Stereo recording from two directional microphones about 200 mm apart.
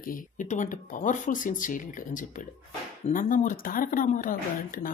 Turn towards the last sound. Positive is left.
turn(degrees=40)  # may be behind; listen again after turning